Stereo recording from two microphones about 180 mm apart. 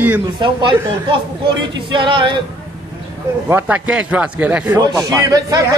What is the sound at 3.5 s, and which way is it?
A man's voice, 10° right (ahead or behind).